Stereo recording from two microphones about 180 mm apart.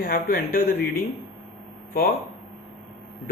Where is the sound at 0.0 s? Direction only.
55° left (ahead or behind).